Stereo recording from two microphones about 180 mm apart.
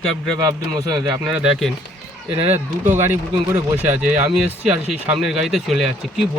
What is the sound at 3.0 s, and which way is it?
Speech, 10° right (ahead or behind).